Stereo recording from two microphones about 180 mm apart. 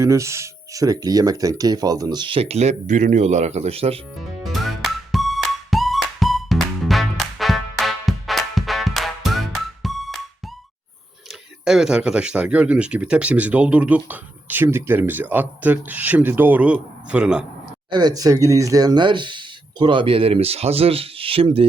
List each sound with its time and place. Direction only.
0.0 s speech: 15° right (ahead or behind); by 4.0 s 35° right (ahead or behind)
4.4 s music: centre (ahead or behind)
11.3 s speech: 5° right (ahead or behind)
17.9 s speech: 20° right (ahead or behind)